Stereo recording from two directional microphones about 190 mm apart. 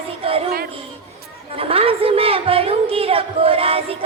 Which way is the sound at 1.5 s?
30° right (ahead or behind).